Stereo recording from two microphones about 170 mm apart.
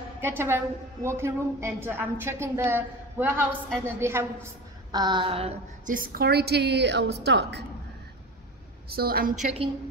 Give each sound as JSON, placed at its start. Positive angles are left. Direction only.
{"t": 0.2, "sound": "a woman's voice", "side_deg": -15}
{"t": 4.9, "sound": "child singing", "side_deg": -25}
{"t": 5.9, "sound": "a woman's voice", "side_deg": -55}
{"t": 8.8, "sound": "a woman's voice", "side_deg": -65}